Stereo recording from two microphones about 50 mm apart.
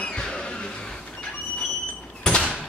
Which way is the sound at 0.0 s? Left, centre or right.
Centre.